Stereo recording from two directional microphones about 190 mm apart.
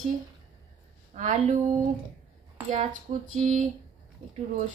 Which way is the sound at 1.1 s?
40° right (ahead or behind).